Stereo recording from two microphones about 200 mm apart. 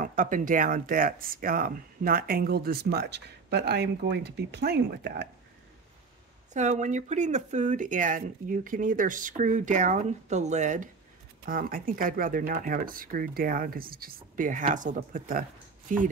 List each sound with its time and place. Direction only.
0.0 s speech: 40° right (ahead or behind)
6.5 s speech: 35° right (ahead or behind)